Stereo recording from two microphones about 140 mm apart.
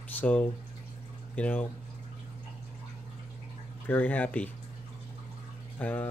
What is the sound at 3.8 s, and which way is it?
Speech, 15° left (ahead or behind).